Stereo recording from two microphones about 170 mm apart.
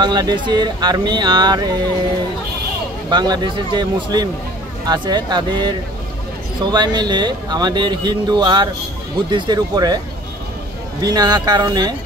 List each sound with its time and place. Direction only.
0.0 s speech: 25° right (ahead or behind)
3.1 s speech: 25° right (ahead or behind)
11.0 s speech: 25° right (ahead or behind)